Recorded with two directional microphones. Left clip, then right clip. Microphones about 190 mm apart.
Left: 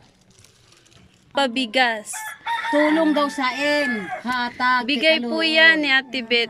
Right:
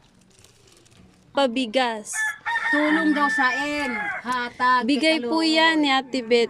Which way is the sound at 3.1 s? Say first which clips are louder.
Right 1 dB; 15° left (ahead or behind).